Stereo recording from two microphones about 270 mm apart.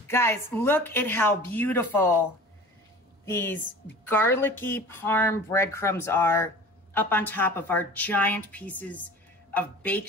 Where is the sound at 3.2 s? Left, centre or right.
Centre.